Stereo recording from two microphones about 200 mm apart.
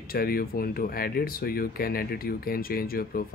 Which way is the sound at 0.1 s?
50° left (ahead or behind).